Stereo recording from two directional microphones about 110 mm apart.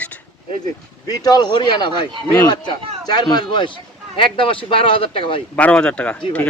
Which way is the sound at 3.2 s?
40° left (ahead or behind).